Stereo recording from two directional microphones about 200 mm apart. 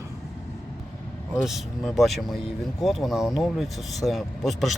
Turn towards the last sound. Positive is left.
turn(degrees=0)  # may be behind; listen again after turning